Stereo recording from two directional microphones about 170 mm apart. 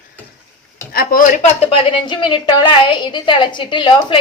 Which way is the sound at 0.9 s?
55° left (ahead or behind).